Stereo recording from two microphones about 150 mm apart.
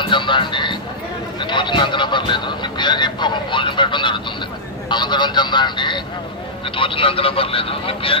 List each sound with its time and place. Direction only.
0.0 s speech: 35° left (ahead or behind)